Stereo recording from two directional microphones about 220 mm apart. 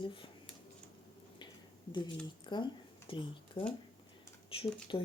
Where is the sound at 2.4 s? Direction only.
20° left (ahead or behind).